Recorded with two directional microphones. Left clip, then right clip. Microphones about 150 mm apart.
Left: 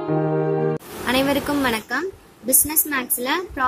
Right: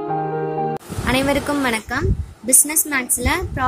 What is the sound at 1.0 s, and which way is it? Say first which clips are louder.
A woman's voice: right 2 dB; 15° right (ahead or behind).